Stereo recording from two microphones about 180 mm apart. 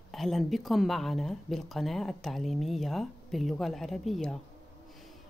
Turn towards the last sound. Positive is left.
turn(degrees=0)  # may be behind; listen again after turning